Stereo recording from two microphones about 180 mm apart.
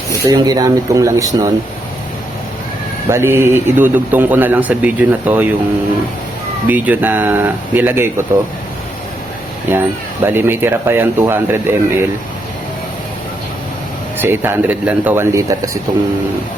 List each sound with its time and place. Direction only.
0.1 s speech: 20° right (ahead or behind)
3.1 s a man's voice: 15° right (ahead or behind)
6.7 s a man's voice: 10° right (ahead or behind)
9.7 s a man's voice: 10° right (ahead or behind)
14.2 s a man's voice: 10° right (ahead or behind)